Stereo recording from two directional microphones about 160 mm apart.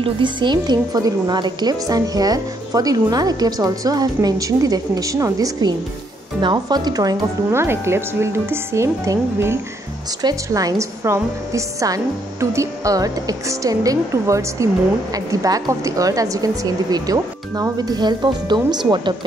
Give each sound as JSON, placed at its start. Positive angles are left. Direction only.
{"t": 0.0, "sound": "a woman's voice", "side_deg": -30}